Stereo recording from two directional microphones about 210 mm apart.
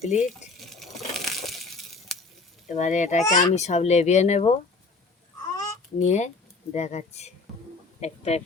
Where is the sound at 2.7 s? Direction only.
35° left (ahead or behind).